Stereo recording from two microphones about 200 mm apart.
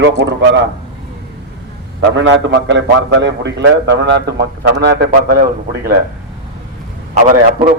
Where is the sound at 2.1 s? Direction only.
65° right (ahead or behind).